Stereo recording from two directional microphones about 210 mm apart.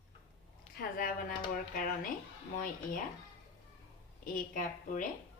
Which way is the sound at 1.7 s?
40° left (ahead or behind).